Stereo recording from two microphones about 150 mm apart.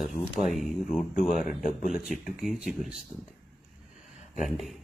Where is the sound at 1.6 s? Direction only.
60° left (ahead or behind).